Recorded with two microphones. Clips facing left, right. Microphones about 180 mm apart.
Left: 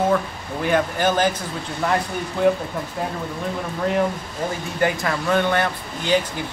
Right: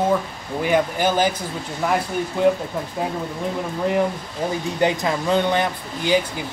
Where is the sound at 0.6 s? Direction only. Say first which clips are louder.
Right 1 dB; 10° right (ahead or behind).